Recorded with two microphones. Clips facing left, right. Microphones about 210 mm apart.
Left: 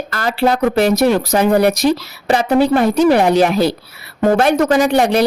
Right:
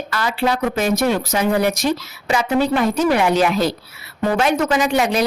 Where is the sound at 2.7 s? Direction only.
35° left (ahead or behind); by 5.0 s 55° left (ahead or behind).